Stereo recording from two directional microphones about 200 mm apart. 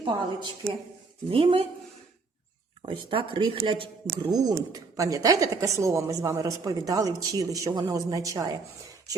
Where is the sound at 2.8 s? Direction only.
25° right (ahead or behind).